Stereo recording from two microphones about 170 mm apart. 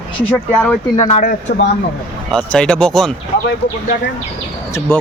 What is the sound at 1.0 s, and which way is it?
Speech, 35° left (ahead or behind).